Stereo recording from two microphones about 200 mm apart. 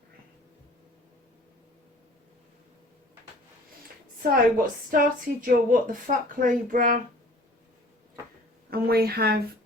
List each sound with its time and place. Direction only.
4.2 s a woman's voice: 45° right (ahead or behind)
8.7 s a woman's voice: 50° right (ahead or behind)